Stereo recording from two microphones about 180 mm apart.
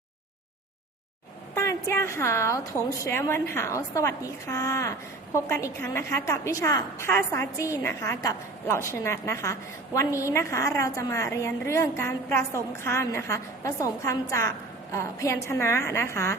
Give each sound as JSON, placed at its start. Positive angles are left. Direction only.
{"t": 1.5, "sound": "a woman's voice", "side_deg": 15}